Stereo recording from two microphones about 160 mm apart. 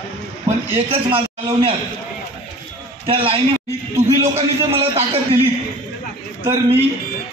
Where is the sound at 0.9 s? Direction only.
35° right (ahead or behind).